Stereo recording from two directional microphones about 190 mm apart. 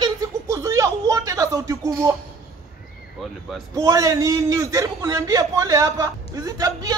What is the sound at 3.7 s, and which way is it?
A man's voice, 15° right (ahead or behind).